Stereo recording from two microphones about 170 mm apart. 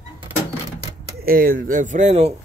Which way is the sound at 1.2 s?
55° right (ahead or behind).